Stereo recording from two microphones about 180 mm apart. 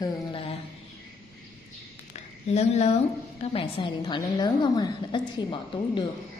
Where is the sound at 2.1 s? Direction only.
40° left (ahead or behind).